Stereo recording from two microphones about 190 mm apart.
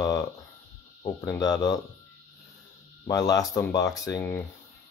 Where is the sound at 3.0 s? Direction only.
20° left (ahead or behind).